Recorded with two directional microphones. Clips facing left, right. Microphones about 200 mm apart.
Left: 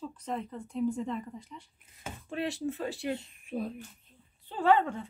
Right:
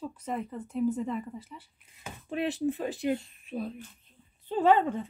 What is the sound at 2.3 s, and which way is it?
Speech, 15° right (ahead or behind).